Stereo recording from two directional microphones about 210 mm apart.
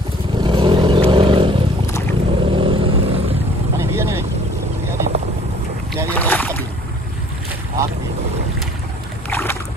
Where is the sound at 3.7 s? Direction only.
10° right (ahead or behind).